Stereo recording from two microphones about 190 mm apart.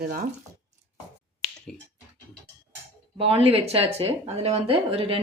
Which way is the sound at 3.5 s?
30° right (ahead or behind).